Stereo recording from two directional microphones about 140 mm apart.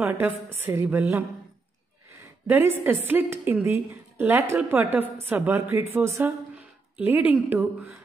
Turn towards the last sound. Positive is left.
turn(degrees=-10)  # may be behind; listen again after turning